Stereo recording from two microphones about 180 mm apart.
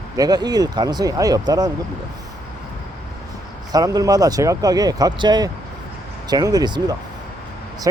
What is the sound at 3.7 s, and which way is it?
Speech, 20° right (ahead or behind).